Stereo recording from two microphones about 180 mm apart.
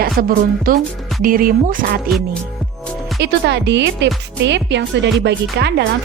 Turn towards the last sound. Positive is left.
turn(degrees=-70)  # may be behind; listen again after turning